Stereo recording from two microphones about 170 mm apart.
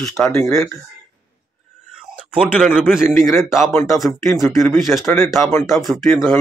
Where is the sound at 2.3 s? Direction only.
5° right (ahead or behind).